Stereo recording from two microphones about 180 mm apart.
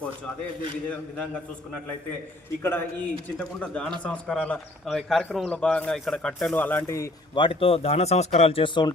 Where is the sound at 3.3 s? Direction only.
5° left (ahead or behind).